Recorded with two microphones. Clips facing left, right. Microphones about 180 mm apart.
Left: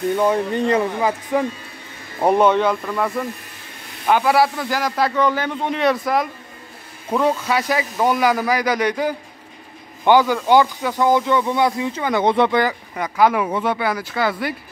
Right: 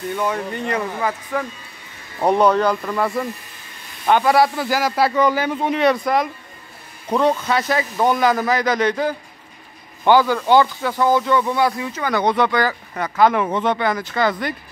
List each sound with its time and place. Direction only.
0.2 s speech: 25° left (ahead or behind)
2.1 s a man's voice: 5° left (ahead or behind); by 12.7 s 25° left (ahead or behind)
12.9 s speech: 10° left (ahead or behind)